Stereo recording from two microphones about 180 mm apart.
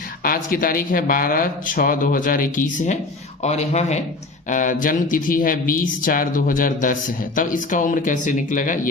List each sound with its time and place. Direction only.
0.2 s speech: 50° left (ahead or behind)